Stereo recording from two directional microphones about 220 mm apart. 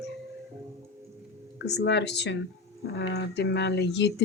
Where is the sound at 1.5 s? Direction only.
50° left (ahead or behind).